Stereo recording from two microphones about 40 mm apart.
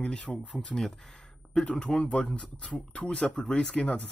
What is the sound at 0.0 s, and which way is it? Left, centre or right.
Speech, left.